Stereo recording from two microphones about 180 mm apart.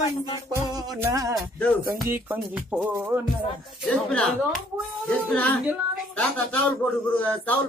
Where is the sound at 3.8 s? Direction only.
5° left (ahead or behind).